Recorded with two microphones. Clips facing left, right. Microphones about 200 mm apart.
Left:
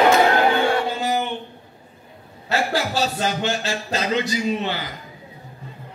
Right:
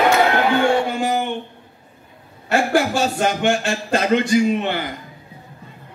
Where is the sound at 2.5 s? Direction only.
50° right (ahead or behind).